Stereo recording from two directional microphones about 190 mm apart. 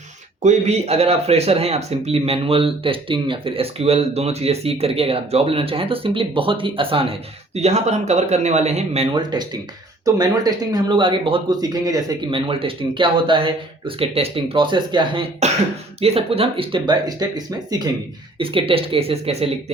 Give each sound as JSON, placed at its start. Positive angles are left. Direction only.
{"t": 0.4, "sound": "speech", "side_deg": -35}